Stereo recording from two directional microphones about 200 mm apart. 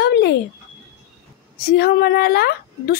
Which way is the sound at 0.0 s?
55° left (ahead or behind).